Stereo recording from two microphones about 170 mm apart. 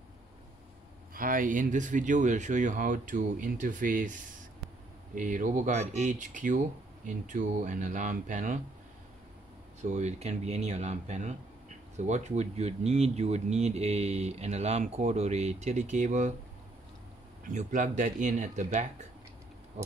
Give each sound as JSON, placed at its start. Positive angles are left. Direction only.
{"t": 1.1, "sound": "speech", "side_deg": -55}
{"t": 5.1, "sound": "speech", "side_deg": -50}
{"t": 9.8, "sound": "speech", "side_deg": -40}
{"t": 17.6, "sound": "speech", "side_deg": -50}